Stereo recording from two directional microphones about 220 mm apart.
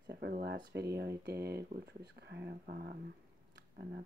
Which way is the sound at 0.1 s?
45° right (ahead or behind).